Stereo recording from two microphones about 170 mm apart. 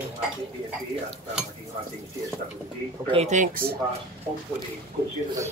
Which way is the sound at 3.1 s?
40° right (ahead or behind).